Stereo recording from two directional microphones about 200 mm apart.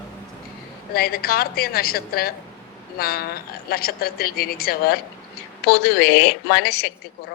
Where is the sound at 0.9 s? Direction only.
50° left (ahead or behind).